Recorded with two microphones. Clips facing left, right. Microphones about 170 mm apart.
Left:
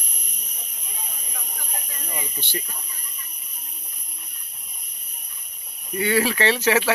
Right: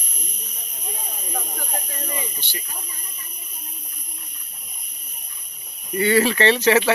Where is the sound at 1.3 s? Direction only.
50° right (ahead or behind).